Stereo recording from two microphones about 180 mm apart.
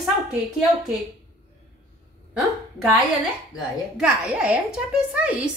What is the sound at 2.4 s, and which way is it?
A woman's voice, centre (ahead or behind).